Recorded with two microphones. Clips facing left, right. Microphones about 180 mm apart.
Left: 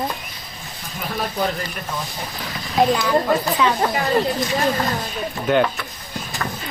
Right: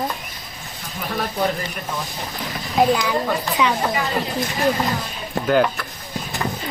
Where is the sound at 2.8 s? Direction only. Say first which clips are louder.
Even; centre (ahead or behind).